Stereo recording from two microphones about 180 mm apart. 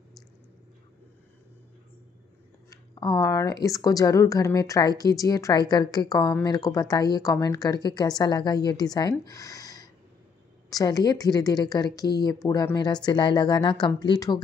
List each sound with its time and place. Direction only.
2.7 s a woman's voice: 20° left (ahead or behind)